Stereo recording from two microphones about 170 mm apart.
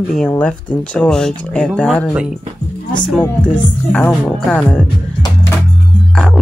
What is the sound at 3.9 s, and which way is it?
Speech, 10° left (ahead or behind).